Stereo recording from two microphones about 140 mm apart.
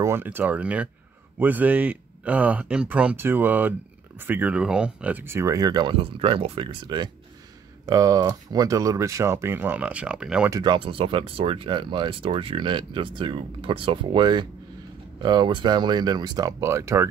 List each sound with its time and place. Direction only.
0.0 s speech: 15° right (ahead or behind)
10.5 s speech: 35° right (ahead or behind)